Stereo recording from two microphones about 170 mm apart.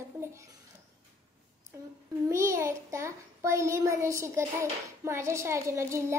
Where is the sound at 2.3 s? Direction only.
15° right (ahead or behind).